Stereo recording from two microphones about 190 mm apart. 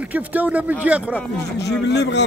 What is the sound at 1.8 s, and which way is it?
Speech, 65° left (ahead or behind).